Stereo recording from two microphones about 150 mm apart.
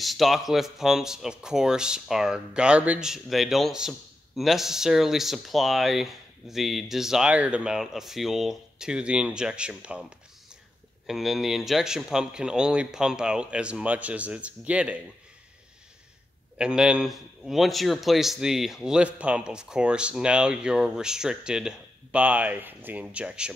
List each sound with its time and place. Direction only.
0.0 s a man's voice: centre (ahead or behind)
16.5 s a man's voice: 5° right (ahead or behind)